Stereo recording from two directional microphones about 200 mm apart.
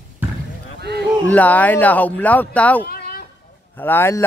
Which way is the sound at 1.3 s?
10° left (ahead or behind).